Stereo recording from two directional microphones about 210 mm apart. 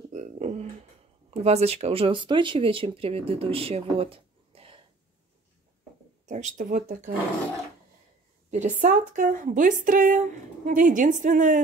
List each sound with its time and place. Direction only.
0.1 s a sound: 35° right (ahead or behind)
1.3 s speech: 30° right (ahead or behind)
6.2 s a woman's voice: 35° right (ahead or behind)
8.5 s a woman's voice: 35° right (ahead or behind)